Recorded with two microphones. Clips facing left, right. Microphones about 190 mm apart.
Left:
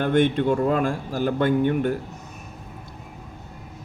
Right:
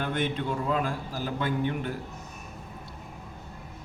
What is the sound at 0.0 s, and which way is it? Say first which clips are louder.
A man's voice: left 10 dB; 50° left (ahead or behind).